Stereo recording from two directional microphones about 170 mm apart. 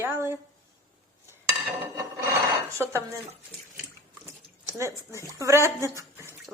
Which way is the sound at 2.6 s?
15° right (ahead or behind).